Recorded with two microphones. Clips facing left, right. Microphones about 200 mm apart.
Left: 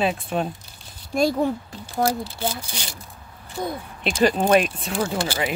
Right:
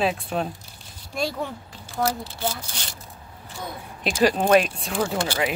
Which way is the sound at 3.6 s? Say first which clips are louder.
Left 7 dB; 40° left (ahead or behind).